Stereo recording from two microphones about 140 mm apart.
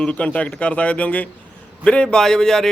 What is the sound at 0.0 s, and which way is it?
A man's voice, 10° left (ahead or behind).